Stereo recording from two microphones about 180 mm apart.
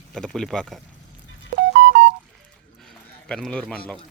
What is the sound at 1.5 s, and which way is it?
Music, 70° right (ahead or behind).